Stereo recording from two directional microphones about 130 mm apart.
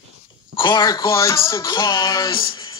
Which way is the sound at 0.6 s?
35° left (ahead or behind).